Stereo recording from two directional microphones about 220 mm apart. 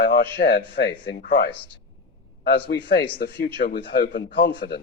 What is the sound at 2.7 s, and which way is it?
A man's voice, 50° left (ahead or behind).